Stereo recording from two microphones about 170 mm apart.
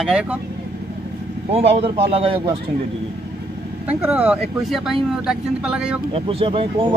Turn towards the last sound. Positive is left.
turn(degrees=-30)  # may be behind; listen again after turning